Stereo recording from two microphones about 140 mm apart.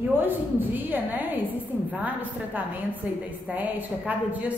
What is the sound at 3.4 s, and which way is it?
A woman's voice, 10° right (ahead or behind).